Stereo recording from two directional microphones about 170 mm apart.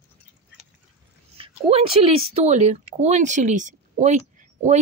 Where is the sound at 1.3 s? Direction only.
35° right (ahead or behind).